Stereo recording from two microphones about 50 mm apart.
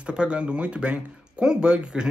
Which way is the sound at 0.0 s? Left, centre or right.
Centre.